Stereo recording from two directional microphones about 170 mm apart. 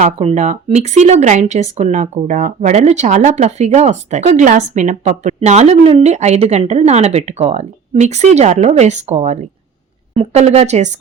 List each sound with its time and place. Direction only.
0.0 s speech: 40° right (ahead or behind)